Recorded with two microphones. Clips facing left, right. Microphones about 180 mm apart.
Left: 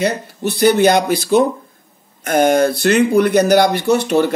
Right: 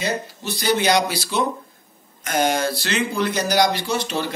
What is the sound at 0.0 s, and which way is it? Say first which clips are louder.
A man's voice: left 7 dB; 60° left (ahead or behind).